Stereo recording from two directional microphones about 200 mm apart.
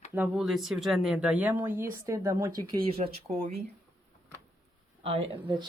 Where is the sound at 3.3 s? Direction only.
35° right (ahead or behind).